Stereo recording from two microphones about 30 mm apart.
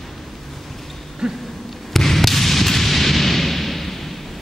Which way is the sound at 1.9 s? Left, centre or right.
Centre.